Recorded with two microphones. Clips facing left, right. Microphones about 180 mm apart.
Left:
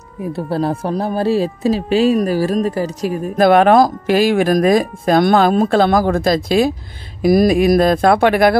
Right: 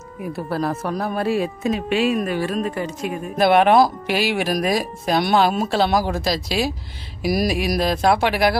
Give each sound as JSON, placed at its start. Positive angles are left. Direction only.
{"t": 0.5, "sound": "speech", "side_deg": 30}